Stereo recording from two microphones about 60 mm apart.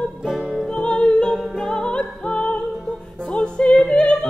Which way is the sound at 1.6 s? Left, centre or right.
Centre.